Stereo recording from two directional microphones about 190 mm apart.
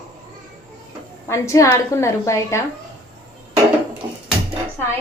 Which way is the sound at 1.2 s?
15° left (ahead or behind).